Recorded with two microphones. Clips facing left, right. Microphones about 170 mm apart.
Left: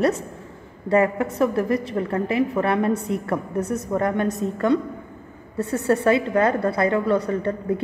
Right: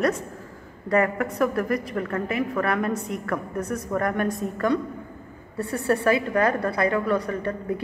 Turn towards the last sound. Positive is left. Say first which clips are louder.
# left 4 dB
turn(degrees=25)  # may be behind; listen again after turning